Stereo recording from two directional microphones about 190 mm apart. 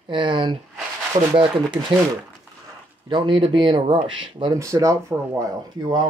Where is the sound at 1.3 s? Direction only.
25° right (ahead or behind).